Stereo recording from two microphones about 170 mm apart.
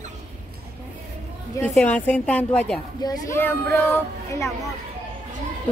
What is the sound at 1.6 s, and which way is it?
A woman's voice, 5° left (ahead or behind).